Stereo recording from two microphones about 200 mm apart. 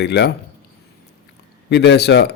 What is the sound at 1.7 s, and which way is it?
Speech, 60° left (ahead or behind).